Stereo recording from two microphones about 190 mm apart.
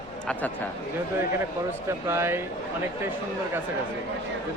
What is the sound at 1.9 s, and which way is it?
Speech, 15° right (ahead or behind).